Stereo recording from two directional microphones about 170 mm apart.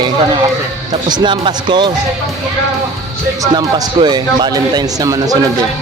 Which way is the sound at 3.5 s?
25° right (ahead or behind).